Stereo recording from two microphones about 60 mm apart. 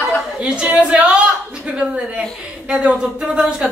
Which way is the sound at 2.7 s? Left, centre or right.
Centre.